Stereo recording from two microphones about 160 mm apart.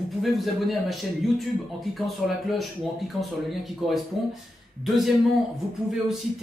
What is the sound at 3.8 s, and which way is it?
Speech, centre (ahead or behind).